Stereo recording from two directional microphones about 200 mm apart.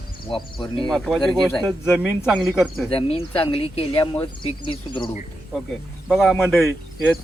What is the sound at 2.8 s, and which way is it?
Speech, 30° left (ahead or behind).